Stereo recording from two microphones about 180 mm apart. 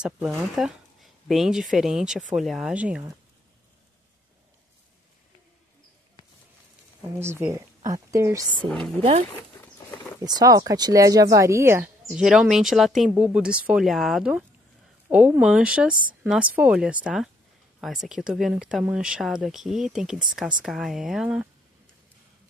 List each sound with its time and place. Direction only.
0.0 s speech: 5° right (ahead or behind)
7.0 s speech: 15° right (ahead or behind)
8.6 s speech: 5° left (ahead or behind)
10.2 s speech: 20° right (ahead or behind)
12.1 s speech: 5° right (ahead or behind)